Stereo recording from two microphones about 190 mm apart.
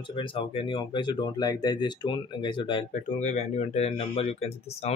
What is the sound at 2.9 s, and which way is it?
Speech, 35° left (ahead or behind).